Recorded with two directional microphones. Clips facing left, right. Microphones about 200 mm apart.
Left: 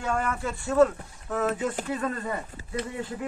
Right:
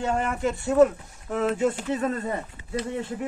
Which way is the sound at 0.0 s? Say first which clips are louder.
Right 3 dB; 25° right (ahead or behind).